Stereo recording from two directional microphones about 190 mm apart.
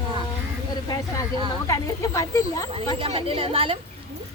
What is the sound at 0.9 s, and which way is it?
Speech, 20° left (ahead or behind).